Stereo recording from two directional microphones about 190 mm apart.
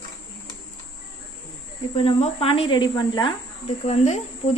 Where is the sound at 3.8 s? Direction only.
35° left (ahead or behind).